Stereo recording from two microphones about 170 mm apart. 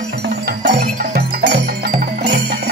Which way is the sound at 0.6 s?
75° right (ahead or behind).